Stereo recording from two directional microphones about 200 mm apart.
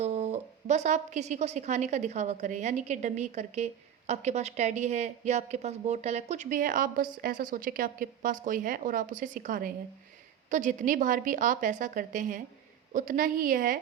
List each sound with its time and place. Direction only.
0.0 s a woman's voice: 35° right (ahead or behind)